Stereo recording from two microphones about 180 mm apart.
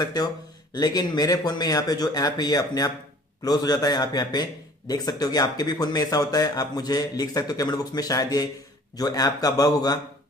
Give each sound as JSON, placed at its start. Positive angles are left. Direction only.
{"t": 0.0, "sound": "a man's voice", "side_deg": 20}